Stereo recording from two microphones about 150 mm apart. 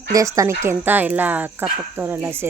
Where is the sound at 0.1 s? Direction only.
20° right (ahead or behind).